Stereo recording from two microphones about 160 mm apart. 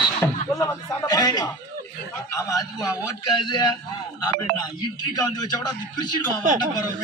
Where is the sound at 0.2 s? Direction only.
15° left (ahead or behind).